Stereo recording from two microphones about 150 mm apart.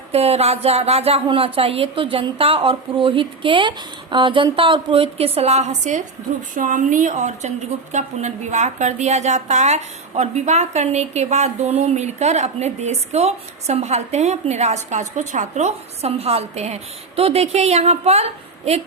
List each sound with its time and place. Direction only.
0.1 s a woman's voice: 40° right (ahead or behind)